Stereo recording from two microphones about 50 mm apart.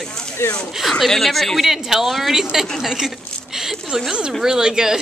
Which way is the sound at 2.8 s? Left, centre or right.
Centre.